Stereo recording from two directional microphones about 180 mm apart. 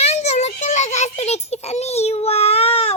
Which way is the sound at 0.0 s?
35° left (ahead or behind).